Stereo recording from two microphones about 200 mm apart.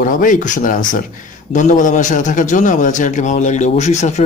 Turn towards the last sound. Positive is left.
turn(degrees=35)  # may be behind; listen again after turning